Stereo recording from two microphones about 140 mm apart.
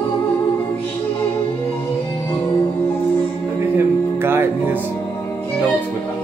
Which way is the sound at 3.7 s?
15° right (ahead or behind).